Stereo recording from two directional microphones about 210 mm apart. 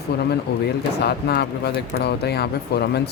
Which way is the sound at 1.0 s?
50° left (ahead or behind).